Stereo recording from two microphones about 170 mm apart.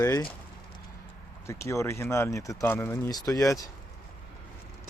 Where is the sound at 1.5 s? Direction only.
15° left (ahead or behind).